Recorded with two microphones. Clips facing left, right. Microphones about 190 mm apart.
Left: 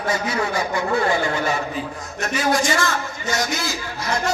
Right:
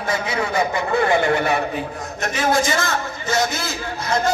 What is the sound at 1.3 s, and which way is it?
Speech, 60° right (ahead or behind).